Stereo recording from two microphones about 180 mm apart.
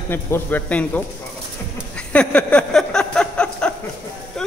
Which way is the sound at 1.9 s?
5° left (ahead or behind).